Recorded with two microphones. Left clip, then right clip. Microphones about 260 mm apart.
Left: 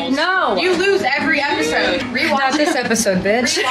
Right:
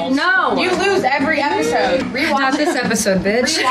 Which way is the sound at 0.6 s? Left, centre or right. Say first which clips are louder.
Even; right.